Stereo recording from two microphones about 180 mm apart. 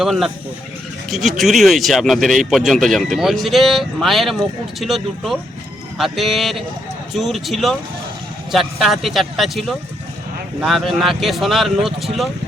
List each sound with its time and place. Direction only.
0.0 s speech: centre (ahead or behind)